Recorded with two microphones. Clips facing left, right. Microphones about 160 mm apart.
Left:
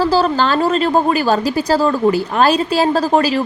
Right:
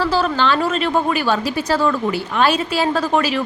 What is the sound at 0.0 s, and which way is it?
Speech, 40° left (ahead or behind).